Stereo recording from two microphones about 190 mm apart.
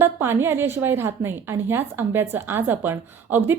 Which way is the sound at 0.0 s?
10° right (ahead or behind).